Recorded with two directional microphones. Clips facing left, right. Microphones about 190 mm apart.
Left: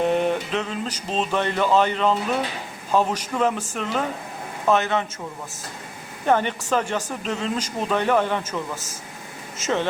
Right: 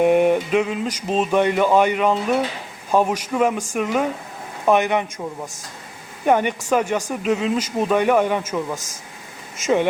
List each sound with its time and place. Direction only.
0.0 s speech: 10° right (ahead or behind)
6.2 s speech: 10° right (ahead or behind)